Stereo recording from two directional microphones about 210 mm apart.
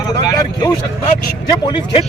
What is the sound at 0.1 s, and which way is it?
Vehicle, 20° left (ahead or behind).